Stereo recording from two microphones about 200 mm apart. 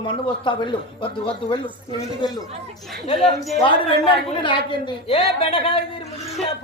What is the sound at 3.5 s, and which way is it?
Speech, 25° left (ahead or behind).